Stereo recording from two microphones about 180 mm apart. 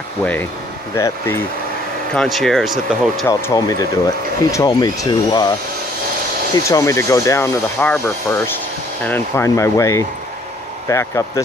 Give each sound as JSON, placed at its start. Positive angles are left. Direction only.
{"t": 0.2, "sound": "speech", "side_deg": 10}
{"t": 2.1, "sound": "speech", "side_deg": 0}
{"t": 3.3, "sound": "speech", "side_deg": 20}
{"t": 6.5, "sound": "speech", "side_deg": 20}